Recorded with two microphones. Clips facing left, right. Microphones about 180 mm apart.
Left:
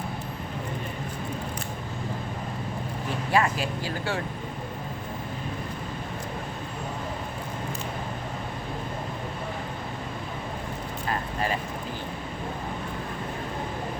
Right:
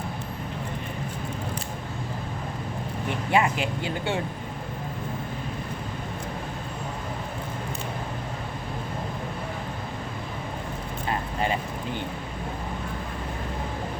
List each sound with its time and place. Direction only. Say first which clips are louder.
3.3 s speech: right 1 dB; 25° right (ahead or behind)